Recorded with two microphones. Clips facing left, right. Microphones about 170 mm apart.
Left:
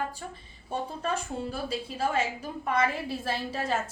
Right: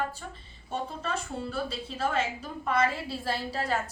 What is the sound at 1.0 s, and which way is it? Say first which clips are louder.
A woman's voice: left 2 dB; 10° left (ahead or behind).